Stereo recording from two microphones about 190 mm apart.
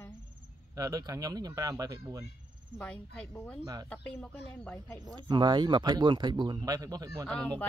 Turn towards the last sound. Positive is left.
turn(degrees=5)  # may be behind; listen again after turning